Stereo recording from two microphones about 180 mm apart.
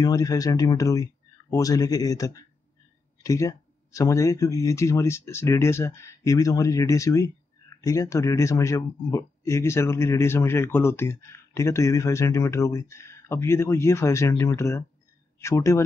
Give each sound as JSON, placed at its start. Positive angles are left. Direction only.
{"t": 0.0, "sound": "speech", "side_deg": 20}